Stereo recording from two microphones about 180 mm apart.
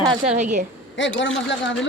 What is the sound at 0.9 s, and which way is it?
Speech, 90° left.